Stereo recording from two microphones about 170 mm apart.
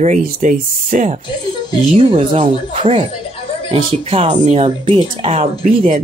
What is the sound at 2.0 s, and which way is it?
Speech, 35° right (ahead or behind).